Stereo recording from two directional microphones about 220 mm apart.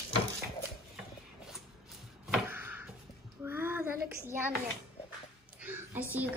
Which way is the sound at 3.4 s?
10° right (ahead or behind).